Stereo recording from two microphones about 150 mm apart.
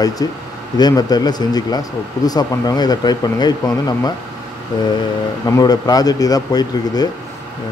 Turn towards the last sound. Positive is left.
turn(degrees=25)  # may be behind; listen again after turning